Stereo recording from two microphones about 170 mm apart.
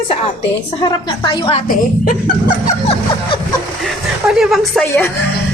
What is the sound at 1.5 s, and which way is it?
Speech, 55° left (ahead or behind).